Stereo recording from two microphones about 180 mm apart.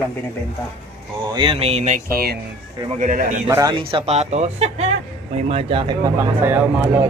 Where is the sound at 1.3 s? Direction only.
25° right (ahead or behind).